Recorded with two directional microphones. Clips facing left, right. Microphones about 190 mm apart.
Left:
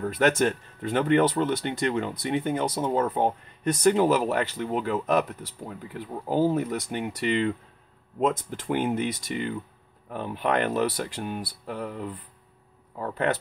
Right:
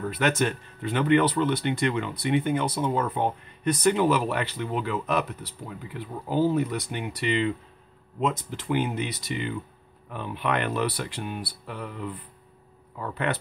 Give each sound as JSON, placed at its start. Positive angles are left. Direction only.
{"t": 0.0, "sound": "speech", "side_deg": 45}